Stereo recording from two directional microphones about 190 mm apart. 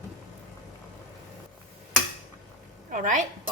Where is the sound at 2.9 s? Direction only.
45° right (ahead or behind).